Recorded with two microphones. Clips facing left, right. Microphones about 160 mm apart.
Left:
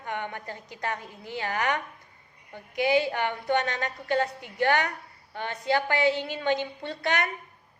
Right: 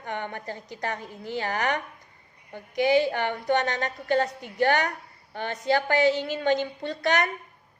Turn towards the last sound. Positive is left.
turn(degrees=-40)  # may be behind; listen again after turning